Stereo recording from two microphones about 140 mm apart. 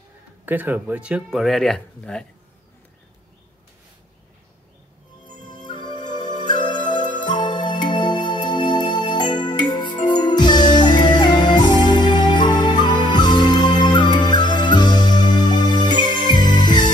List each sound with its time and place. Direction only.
0.5 s speech: 15° right (ahead or behind); by 2.2 s 5° left (ahead or behind)
5.5 s music: 35° left (ahead or behind)